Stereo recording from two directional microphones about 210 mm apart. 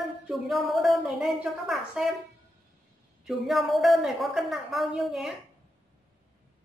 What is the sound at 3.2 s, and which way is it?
Speech, centre (ahead or behind).